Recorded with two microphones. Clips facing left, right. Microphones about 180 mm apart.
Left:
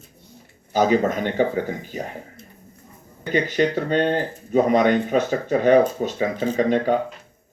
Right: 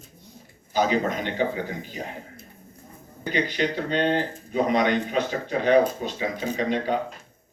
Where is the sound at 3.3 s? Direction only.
45° left (ahead or behind).